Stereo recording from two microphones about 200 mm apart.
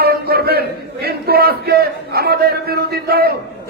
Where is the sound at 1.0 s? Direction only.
50° right (ahead or behind).